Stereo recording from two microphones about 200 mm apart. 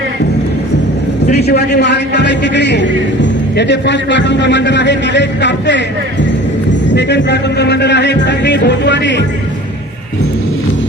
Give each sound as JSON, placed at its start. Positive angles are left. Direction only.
{"t": 1.3, "sound": "a man's voice", "side_deg": 55}
{"t": 6.9, "sound": "a man's voice", "side_deg": 60}